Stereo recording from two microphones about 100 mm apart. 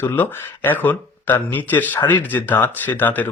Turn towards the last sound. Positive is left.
turn(degrees=20)  # may be behind; listen again after turning